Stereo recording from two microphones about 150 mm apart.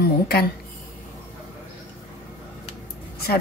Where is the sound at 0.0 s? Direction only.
90° left.